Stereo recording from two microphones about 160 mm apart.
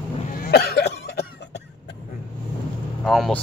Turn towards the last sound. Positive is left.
turn(degrees=0)  # may be behind; listen again after turning